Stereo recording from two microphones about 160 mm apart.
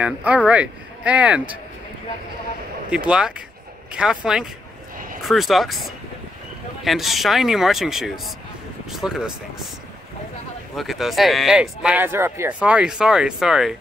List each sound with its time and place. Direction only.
0.0 s a man's voice: 10° right (ahead or behind)
2.9 s a man's voice: 5° right (ahead or behind)
4.9 s vehicle: 60° right (ahead or behind)
5.2 s speech: centre (ahead or behind)
10.8 s speech: centre (ahead or behind)